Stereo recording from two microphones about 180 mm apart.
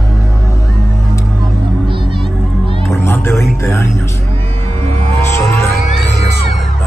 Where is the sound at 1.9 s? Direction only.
30° right (ahead or behind).